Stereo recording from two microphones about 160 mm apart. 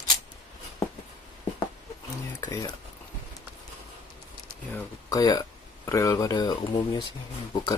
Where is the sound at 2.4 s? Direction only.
20° left (ahead or behind).